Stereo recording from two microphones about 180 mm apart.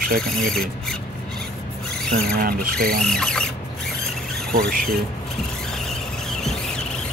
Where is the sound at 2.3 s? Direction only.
55° right (ahead or behind).